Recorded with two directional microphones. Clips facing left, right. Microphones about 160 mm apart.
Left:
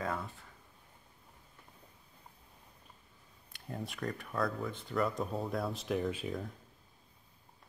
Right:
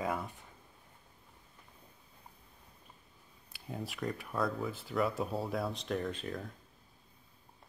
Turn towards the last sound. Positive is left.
turn(degrees=5)  # may be behind; listen again after turning